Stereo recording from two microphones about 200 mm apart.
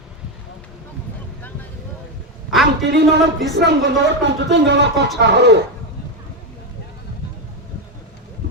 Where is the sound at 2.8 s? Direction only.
60° right (ahead or behind).